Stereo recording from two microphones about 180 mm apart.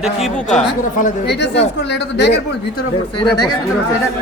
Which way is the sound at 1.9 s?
70° left (ahead or behind).